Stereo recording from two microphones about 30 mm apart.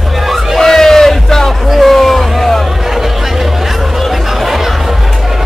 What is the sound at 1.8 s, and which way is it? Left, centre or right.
Music, centre.